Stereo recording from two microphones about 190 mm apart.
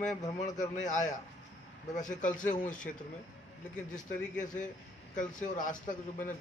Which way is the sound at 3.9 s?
40° left (ahead or behind).